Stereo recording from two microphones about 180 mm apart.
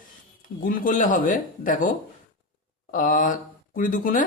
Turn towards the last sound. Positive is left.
turn(degrees=50)  # may be behind; listen again after turning